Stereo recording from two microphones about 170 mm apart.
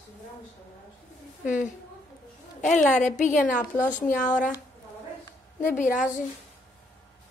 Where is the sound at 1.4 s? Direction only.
45° left (ahead or behind).